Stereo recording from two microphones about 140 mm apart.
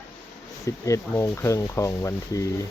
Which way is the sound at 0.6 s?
25° left (ahead or behind).